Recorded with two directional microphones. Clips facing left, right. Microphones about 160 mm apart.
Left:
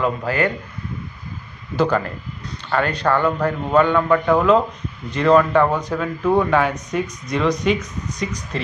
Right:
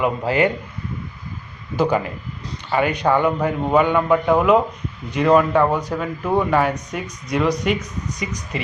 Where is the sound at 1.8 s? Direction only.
10° right (ahead or behind).